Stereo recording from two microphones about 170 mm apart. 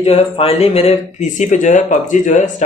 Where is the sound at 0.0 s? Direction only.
40° left (ahead or behind).